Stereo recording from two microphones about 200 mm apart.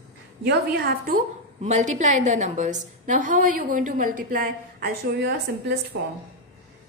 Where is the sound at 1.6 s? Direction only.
35° right (ahead or behind); by 5.7 s 50° right (ahead or behind).